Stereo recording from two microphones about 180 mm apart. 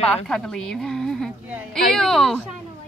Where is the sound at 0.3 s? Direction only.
5° left (ahead or behind).